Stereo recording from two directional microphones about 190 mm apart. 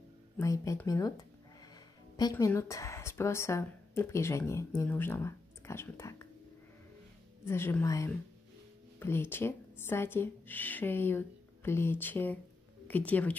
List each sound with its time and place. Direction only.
0.4 s speech: 15° left (ahead or behind)
7.4 s speech: 10° left (ahead or behind)